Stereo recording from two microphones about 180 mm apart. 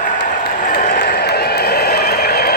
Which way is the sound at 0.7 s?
55° left (ahead or behind).